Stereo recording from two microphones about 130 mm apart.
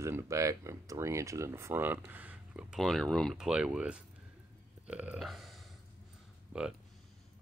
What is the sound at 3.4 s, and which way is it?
Speech, 5° right (ahead or behind).